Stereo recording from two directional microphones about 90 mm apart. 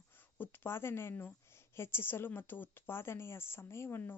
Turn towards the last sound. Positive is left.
turn(degrees=25)  # may be behind; listen again after turning